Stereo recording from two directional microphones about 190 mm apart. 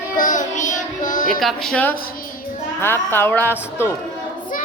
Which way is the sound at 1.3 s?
Centre (ahead or behind).